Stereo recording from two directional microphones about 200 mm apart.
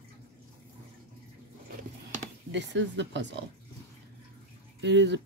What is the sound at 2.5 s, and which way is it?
Speech, 60° right (ahead or behind).